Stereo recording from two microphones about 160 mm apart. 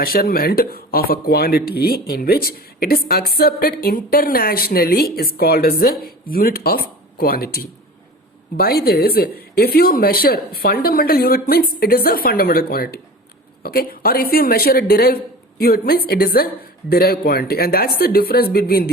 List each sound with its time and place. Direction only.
0.0 s speech: 70° left (ahead or behind)